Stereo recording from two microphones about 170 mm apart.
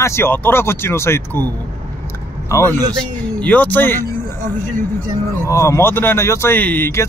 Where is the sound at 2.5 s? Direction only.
15° left (ahead or behind).